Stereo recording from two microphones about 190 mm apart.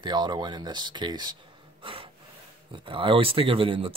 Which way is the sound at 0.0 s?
25° right (ahead or behind).